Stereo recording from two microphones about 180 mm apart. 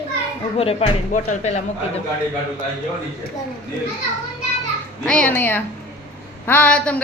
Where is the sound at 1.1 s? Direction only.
45° left (ahead or behind).